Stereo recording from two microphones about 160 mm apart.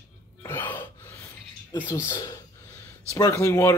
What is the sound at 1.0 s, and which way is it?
Filing, 15° left (ahead or behind).